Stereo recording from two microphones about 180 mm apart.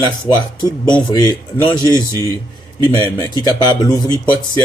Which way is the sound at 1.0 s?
25° left (ahead or behind).